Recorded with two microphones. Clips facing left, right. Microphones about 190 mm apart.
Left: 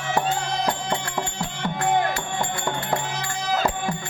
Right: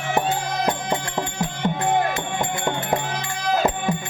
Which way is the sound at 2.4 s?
20° right (ahead or behind).